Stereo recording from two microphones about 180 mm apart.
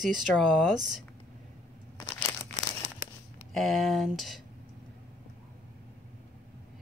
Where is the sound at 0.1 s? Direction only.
Centre (ahead or behind).